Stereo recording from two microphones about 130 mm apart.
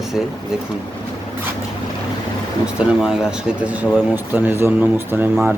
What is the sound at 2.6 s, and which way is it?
Speech, 5° right (ahead or behind).